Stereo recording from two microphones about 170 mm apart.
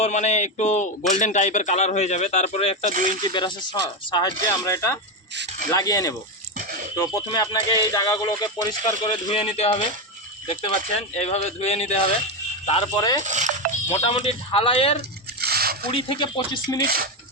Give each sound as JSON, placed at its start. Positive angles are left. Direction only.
{"t": 0.0, "sound": "a man's voice", "side_deg": 45}
{"t": 2.9, "sound": "speech", "side_deg": -50}
{"t": 3.3, "sound": "speech", "side_deg": 25}
{"t": 6.6, "sound": "a sound", "side_deg": -50}
{"t": 6.9, "sound": "a man's voice", "side_deg": 25}
{"t": 13.2, "sound": "speech", "side_deg": -45}
{"t": 13.9, "sound": "a man's voice", "side_deg": 30}
{"t": 15.4, "sound": "a sound", "side_deg": -65}
{"t": 15.9, "sound": "speech", "side_deg": 30}
{"t": 16.8, "sound": "speech", "side_deg": -60}